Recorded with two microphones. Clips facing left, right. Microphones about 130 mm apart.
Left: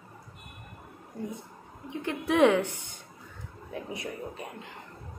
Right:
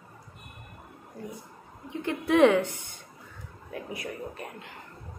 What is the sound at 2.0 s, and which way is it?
Speech, 15° left (ahead or behind).